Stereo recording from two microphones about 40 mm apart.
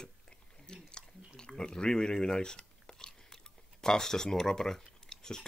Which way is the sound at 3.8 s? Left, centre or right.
Centre.